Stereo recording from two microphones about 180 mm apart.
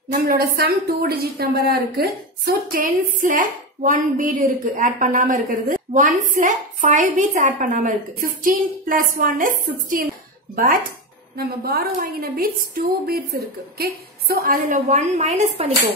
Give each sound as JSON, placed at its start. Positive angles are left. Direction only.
{"t": 0.1, "sound": "a woman's voice", "side_deg": -55}